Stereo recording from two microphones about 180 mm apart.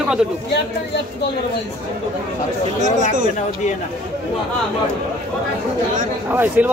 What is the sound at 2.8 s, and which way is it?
Speech, 45° right (ahead or behind).